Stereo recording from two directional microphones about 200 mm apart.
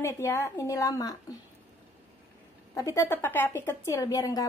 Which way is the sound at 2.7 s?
15° left (ahead or behind).